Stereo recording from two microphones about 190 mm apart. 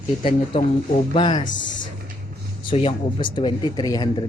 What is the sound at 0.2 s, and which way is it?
Speech, 30° left (ahead or behind).